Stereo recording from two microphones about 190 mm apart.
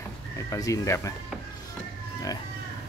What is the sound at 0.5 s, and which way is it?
Speech, 15° left (ahead or behind).